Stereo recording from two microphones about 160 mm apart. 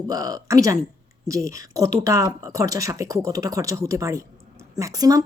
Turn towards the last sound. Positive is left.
turn(degrees=-20)  # may be behind; listen again after turning